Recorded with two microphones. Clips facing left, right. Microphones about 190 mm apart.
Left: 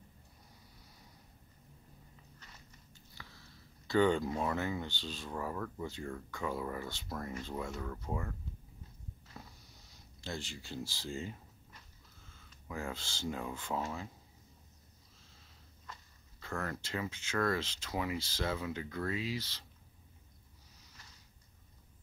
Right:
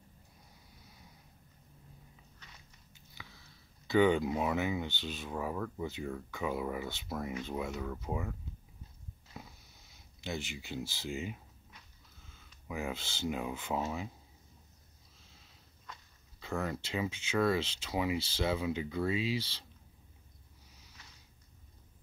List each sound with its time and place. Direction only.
3.8 s speech: 15° right (ahead or behind)
5.3 s speech: 10° right (ahead or behind)
10.2 s speech: 20° right (ahead or behind)
12.6 s speech: 15° right (ahead or behind)
16.3 s speech: 20° right (ahead or behind)
19.1 s speech: 25° right (ahead or behind)